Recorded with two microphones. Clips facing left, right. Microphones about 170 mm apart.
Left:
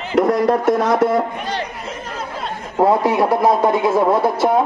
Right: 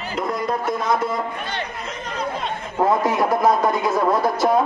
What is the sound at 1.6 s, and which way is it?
Chatter, 10° left (ahead or behind).